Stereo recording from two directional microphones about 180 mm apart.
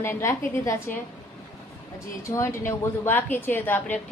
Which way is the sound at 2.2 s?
15° left (ahead or behind).